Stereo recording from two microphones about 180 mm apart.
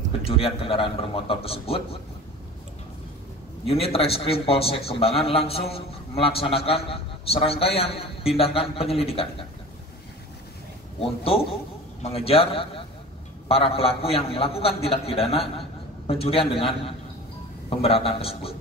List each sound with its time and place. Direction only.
0.2 s a man's voice: 30° left (ahead or behind)
3.6 s a man's voice: 35° left (ahead or behind)
11.0 s a man's voice: 30° left (ahead or behind)